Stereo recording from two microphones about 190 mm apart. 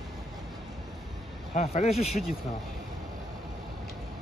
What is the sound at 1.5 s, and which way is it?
Speech, 35° left (ahead or behind).